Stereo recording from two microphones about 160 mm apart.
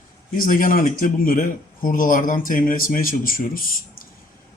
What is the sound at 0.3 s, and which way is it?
Speech, 60° left (ahead or behind).